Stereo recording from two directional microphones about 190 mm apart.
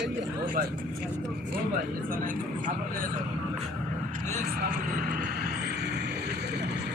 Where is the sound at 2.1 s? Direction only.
45° right (ahead or behind).